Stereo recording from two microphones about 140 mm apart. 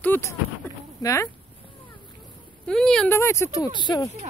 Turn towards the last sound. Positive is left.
turn(degrees=30)  # may be behind; listen again after turning